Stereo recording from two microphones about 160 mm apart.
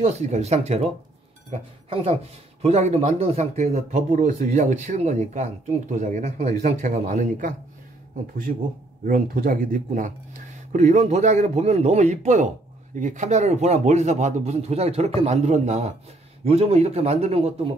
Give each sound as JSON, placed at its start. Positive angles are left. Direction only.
{"t": 0.0, "sound": "speech", "side_deg": -45}
{"t": 9.0, "sound": "speech", "side_deg": -60}
{"t": 10.7, "sound": "speech", "side_deg": -45}